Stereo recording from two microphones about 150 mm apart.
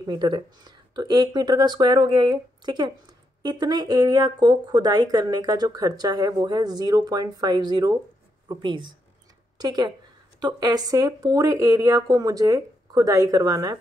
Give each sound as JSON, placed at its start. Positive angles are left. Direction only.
{"t": 0.0, "sound": "speech", "side_deg": -30}